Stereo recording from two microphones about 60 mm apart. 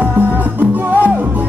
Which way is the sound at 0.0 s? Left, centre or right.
Right.